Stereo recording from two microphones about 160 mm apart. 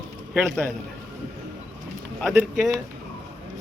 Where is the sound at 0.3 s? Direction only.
5° left (ahead or behind).